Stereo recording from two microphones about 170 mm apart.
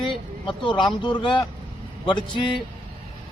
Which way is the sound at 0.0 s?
30° left (ahead or behind).